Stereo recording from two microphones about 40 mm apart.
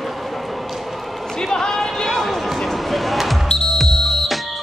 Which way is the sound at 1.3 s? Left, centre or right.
Centre.